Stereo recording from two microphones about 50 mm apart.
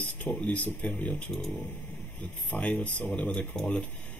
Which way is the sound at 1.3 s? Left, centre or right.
Centre.